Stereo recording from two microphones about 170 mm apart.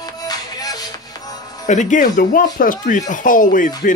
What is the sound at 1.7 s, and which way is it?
Speech, 45° left (ahead or behind).